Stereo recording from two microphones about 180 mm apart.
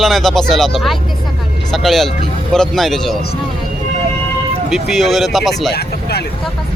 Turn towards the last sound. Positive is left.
turn(degrees=65)  # may be behind; listen again after turning